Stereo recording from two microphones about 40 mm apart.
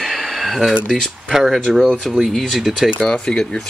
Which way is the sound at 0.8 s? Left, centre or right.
Centre.